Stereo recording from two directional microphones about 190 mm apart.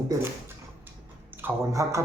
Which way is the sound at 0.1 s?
10° right (ahead or behind).